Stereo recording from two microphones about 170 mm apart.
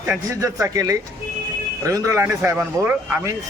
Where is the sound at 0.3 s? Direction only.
20° right (ahead or behind).